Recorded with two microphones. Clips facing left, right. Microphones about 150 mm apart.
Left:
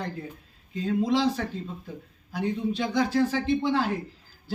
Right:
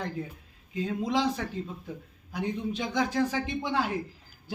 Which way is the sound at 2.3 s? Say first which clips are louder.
Left 4 dB; 15° right (ahead or behind).